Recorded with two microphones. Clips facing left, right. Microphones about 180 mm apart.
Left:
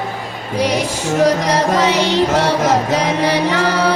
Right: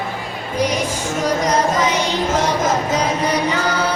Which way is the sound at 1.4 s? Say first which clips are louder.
Left 2 dB; 70° left (ahead or behind).